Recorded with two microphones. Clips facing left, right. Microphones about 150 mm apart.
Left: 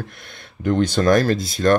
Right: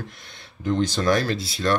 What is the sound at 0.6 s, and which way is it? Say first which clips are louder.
Speech: left 4 dB; 55° left (ahead or behind).